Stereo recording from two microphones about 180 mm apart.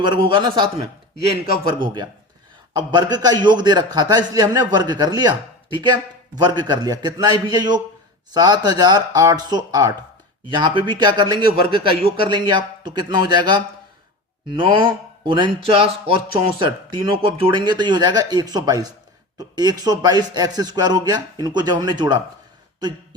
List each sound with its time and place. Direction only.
0.0 s speech: 25° right (ahead or behind)